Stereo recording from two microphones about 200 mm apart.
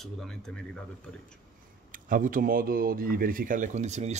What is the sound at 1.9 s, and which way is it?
Speech, 40° right (ahead or behind).